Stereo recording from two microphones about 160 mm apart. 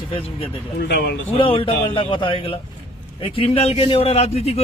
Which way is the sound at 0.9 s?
90° left.